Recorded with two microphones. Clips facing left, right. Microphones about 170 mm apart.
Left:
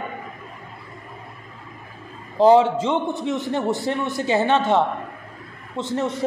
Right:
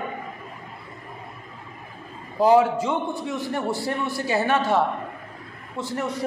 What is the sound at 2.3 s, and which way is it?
A man's voice, 25° left (ahead or behind).